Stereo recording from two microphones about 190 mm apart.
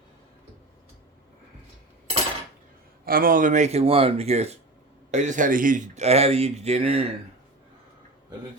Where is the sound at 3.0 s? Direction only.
50° right (ahead or behind); by 7.1 s 30° right (ahead or behind).